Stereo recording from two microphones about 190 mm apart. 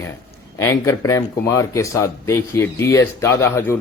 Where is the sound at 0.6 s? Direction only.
15° left (ahead or behind).